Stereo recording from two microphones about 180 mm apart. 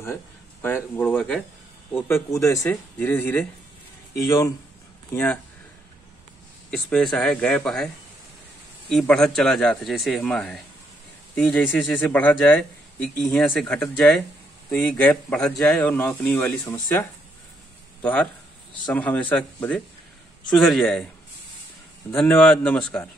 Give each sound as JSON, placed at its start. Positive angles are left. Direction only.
{"t": 0.0, "sound": "a man's voice", "side_deg": 15}
{"t": 5.1, "sound": "a man's voice", "side_deg": 5}
{"t": 6.7, "sound": "a man's voice", "side_deg": 5}
{"t": 22.1, "sound": "speech", "side_deg": 5}